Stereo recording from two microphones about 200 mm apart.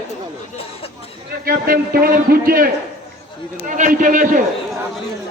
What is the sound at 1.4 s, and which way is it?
A man's voice, 45° right (ahead or behind).